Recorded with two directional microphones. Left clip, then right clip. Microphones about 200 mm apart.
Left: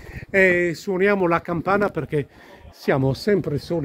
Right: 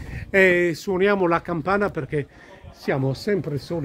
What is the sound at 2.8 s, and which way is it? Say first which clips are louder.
Speech: left 3 dB; 45° left (ahead or behind).